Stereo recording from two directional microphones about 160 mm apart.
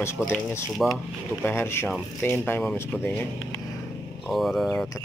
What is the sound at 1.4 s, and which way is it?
Speech, 15° left (ahead or behind).